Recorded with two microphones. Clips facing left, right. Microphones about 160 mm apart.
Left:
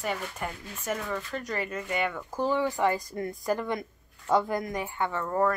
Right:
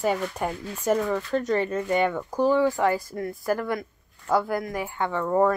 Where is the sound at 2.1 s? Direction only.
15° right (ahead or behind).